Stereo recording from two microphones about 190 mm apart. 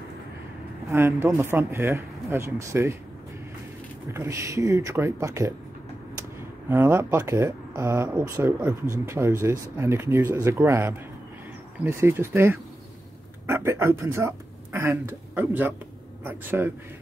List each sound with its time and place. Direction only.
0.8 s speech: 15° right (ahead or behind)
4.1 s speech: 15° right (ahead or behind)
6.7 s speech: 15° right (ahead or behind)